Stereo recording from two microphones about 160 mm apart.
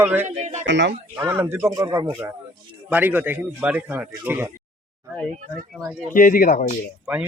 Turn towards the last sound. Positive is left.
turn(degrees=-10)  # may be behind; listen again after turning